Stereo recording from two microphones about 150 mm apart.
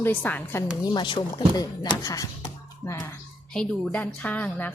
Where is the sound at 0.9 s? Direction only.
30° left (ahead or behind).